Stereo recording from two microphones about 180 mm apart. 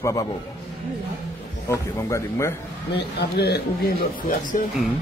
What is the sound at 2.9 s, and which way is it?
Speech, 65° left (ahead or behind).